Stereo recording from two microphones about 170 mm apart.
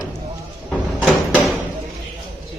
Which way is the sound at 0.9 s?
5° right (ahead or behind).